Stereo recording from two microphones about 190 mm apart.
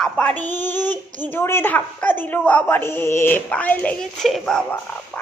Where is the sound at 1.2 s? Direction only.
10° left (ahead or behind).